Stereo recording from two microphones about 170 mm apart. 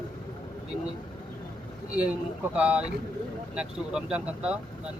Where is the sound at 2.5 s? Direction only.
5° right (ahead or behind).